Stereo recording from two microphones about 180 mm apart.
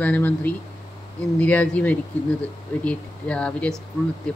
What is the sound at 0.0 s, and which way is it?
Speech, 10° left (ahead or behind).